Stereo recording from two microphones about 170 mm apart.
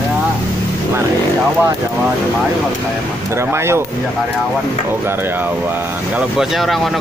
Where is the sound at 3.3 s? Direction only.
15° right (ahead or behind).